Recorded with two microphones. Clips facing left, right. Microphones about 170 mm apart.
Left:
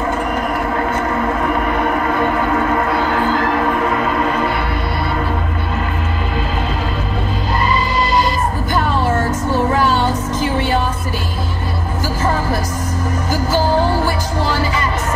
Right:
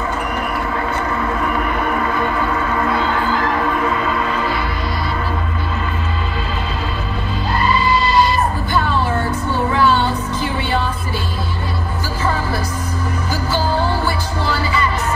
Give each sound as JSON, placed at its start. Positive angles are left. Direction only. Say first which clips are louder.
{"t": 3.9, "sound": "music", "louder": "left 2 dB", "side_deg": 50}
{"t": 7.8, "sound": "music", "louder": "right 1 dB", "side_deg": 45}
{"t": 13.3, "sound": "music", "louder": "left 4 dB", "side_deg": 45}